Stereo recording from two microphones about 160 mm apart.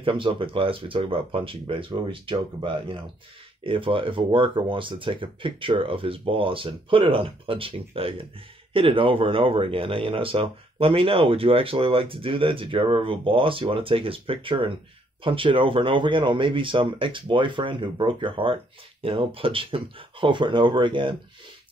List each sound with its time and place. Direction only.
0.0 s speech: 30° right (ahead or behind)